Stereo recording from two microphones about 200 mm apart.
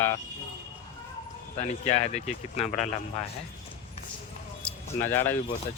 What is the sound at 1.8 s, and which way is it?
Speech, 35° left (ahead or behind).